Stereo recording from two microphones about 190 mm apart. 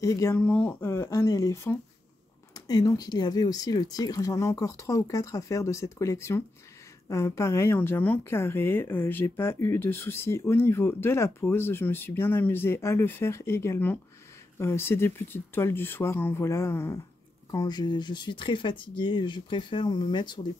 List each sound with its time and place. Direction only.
0.0 s speech: 15° left (ahead or behind)